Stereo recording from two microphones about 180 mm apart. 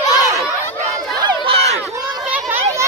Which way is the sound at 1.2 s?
35° right (ahead or behind).